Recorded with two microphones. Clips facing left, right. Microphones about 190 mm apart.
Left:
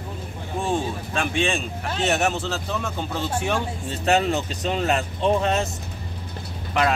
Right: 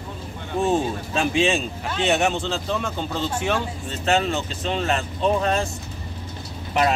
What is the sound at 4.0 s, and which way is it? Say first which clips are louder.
Speech: left 1 dB; 35° left (ahead or behind).